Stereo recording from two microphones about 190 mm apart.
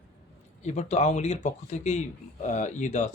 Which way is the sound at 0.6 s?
35° left (ahead or behind).